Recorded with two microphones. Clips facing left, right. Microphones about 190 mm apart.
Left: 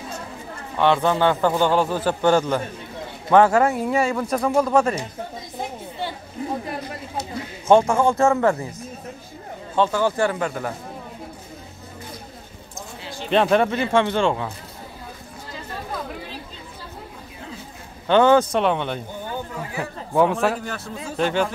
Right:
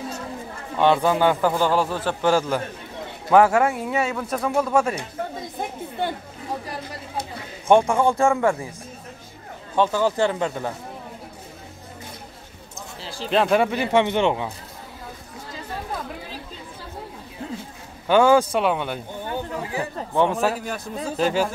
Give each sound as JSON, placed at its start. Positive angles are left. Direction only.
{"t": 0.7, "sound": "a man's voice", "side_deg": -10}
{"t": 5.6, "sound": "chatter", "side_deg": -50}
{"t": 7.6, "sound": "speech", "side_deg": -15}
{"t": 9.8, "sound": "speech", "side_deg": -15}
{"t": 13.3, "sound": "speech", "side_deg": 0}
{"t": 18.0, "sound": "a man's voice", "side_deg": -10}
{"t": 20.6, "sound": "a man's voice", "side_deg": -15}